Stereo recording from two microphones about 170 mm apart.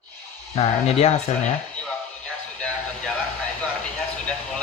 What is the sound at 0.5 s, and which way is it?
Speech, 40° left (ahead or behind).